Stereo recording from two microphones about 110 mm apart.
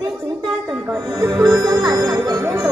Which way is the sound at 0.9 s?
35° right (ahead or behind).